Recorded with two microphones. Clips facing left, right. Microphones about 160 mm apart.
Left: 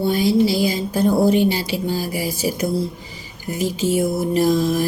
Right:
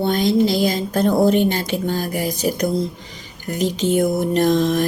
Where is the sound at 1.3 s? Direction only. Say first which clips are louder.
Even; 50° right (ahead or behind).